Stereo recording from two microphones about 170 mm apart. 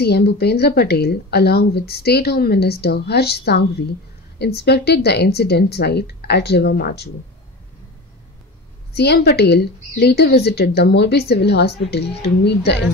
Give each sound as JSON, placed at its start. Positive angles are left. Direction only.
{"t": 0.0, "sound": "a woman's voice", "side_deg": 70}
{"t": 8.9, "sound": "a woman's voice", "side_deg": 75}